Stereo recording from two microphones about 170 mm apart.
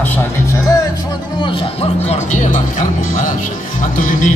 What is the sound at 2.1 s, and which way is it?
Music, 45° left (ahead or behind).